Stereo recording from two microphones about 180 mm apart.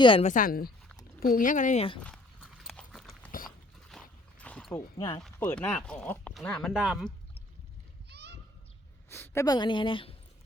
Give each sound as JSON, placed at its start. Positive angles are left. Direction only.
{"t": 0.0, "sound": "a woman's voice", "side_deg": 30}
{"t": 0.3, "sound": "speech", "side_deg": 50}
{"t": 2.0, "sound": "clip-clop", "side_deg": 5}
{"t": 3.9, "sound": "a sound", "side_deg": 5}
{"t": 4.9, "sound": "a woman's voice", "side_deg": 25}
{"t": 5.2, "sound": "speech", "side_deg": 5}
{"t": 8.1, "sound": "a sound", "side_deg": -65}
{"t": 9.0, "sound": "a woman's voice", "side_deg": 15}